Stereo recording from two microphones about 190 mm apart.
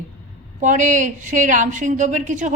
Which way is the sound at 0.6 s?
40° right (ahead or behind).